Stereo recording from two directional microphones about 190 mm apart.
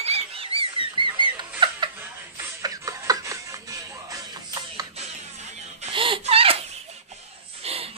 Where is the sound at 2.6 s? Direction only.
20° right (ahead or behind).